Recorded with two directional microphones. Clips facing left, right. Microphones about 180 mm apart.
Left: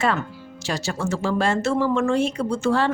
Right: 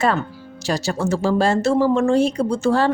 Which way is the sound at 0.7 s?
40° right (ahead or behind).